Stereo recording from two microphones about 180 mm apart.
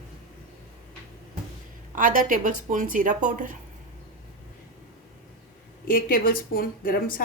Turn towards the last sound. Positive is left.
turn(degrees=55)  # may be behind; listen again after turning